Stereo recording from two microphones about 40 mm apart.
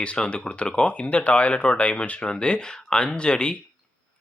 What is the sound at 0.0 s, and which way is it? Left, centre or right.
Speech, left.